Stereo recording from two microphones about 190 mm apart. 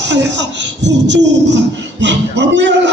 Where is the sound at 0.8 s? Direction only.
70° right (ahead or behind).